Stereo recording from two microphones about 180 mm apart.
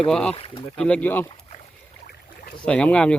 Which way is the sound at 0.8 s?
5° left (ahead or behind).